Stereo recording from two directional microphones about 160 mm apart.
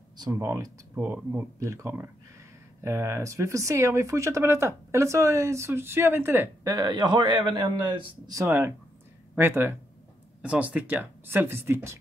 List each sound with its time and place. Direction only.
0.2 s speech: 20° right (ahead or behind)